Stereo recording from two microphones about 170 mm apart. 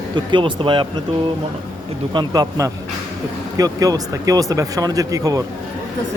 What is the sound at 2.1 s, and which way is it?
Speech, 25° right (ahead or behind).